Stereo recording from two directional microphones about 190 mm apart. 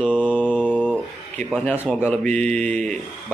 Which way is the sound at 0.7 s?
10° left (ahead or behind).